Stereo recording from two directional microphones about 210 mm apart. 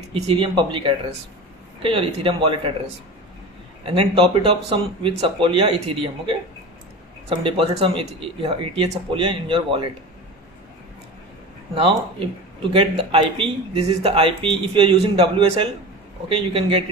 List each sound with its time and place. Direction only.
0.1 s speech: 25° right (ahead or behind)
3.8 s speech: 25° right (ahead or behind)
11.7 s speech: 25° right (ahead or behind)